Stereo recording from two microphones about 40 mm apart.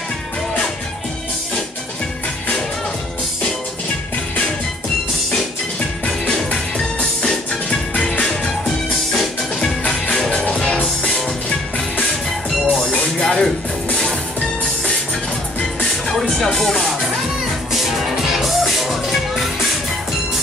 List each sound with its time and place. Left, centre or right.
6.0 s music: centre
10.1 s music: centre
10.4 s music: left
12.6 s music: left
13.0 s music: centre
15.8 s music: centre
18.3 s music: centre